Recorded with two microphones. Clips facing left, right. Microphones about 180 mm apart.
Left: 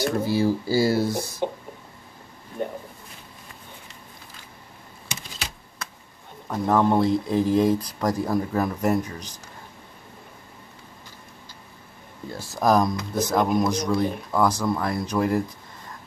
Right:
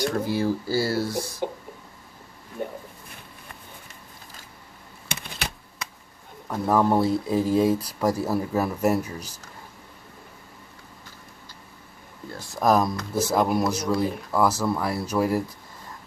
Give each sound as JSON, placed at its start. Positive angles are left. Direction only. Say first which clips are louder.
{"t": 0.0, "sound": "speech", "louder": "left 2 dB", "side_deg": 5}
{"t": 5.0, "sound": "typewriter", "louder": "right 3 dB", "side_deg": -60}
{"t": 6.5, "sound": "speech", "louder": "left 1 dB", "side_deg": -5}
{"t": 12.5, "sound": "speech", "louder": "left 1 dB", "side_deg": 0}